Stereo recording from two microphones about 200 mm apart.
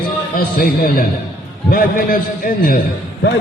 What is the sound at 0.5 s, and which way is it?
A man's voice, 45° left (ahead or behind).